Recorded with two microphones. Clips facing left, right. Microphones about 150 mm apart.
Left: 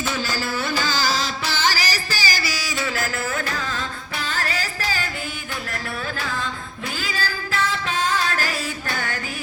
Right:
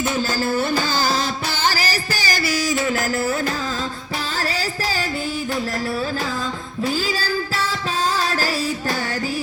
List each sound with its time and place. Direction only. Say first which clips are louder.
0.2 s music: right 5 dB; 50° right (ahead or behind)
4.4 s music: right 4 dB; 35° right (ahead or behind)
7.2 s music: right 2 dB; 35° right (ahead or behind)